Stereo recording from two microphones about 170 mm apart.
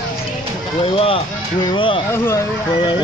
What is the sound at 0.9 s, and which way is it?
Speech, 35° left (ahead or behind).